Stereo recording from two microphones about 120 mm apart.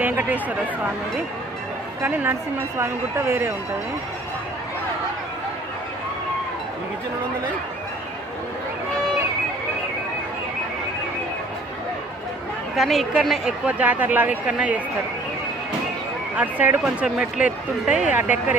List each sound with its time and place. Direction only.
0.0 s speech: 15° right (ahead or behind)
2.0 s speech: 20° right (ahead or behind)
12.7 s speech: centre (ahead or behind)
16.3 s speech: 15° right (ahead or behind)